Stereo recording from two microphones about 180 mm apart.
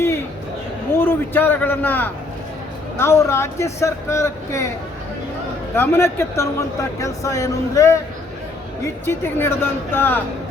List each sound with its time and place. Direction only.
0.9 s speech: 10° left (ahead or behind)
5.7 s speech: 15° left (ahead or behind)
9.0 s speech: 10° left (ahead or behind)